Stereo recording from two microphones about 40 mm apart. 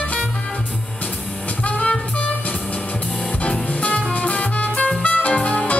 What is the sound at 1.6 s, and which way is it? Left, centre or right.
Music, left.